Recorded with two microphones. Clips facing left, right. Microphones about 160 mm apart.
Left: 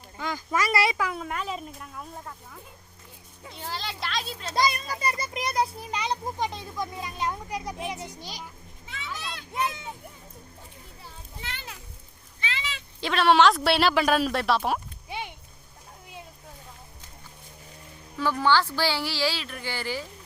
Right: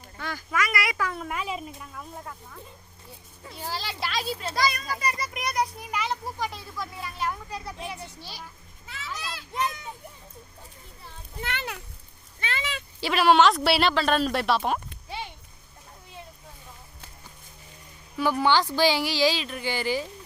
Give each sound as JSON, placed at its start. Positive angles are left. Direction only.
{"t": 0.2, "sound": "speech", "side_deg": 20}
{"t": 0.9, "sound": "a sound", "side_deg": 10}
{"t": 1.2, "sound": "a child's voice", "side_deg": -5}
{"t": 3.5, "sound": "a child's voice", "side_deg": -5}
{"t": 4.5, "sound": "a child's voice", "side_deg": 25}
{"t": 8.9, "sound": "children playing", "side_deg": 0}
{"t": 11.3, "sound": "a child's voice", "side_deg": -65}
{"t": 12.4, "sound": "a sound", "side_deg": -55}
{"t": 13.0, "sound": "a child's voice", "side_deg": -5}
{"t": 13.9, "sound": "a child's voice", "side_deg": 10}
{"t": 18.2, "sound": "speech", "side_deg": -15}